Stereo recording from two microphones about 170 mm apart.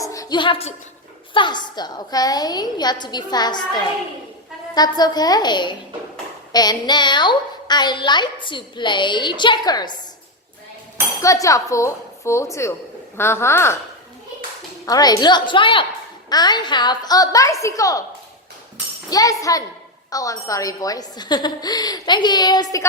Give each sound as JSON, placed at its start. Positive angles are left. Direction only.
{"t": 0.0, "sound": "a sound", "side_deg": 20}
{"t": 1.3, "sound": "a woman's voice", "side_deg": 25}
{"t": 11.2, "sound": "dishes", "side_deg": 20}
{"t": 14.8, "sound": "a woman's voice", "side_deg": 20}
{"t": 19.1, "sound": "a woman's voice", "side_deg": 20}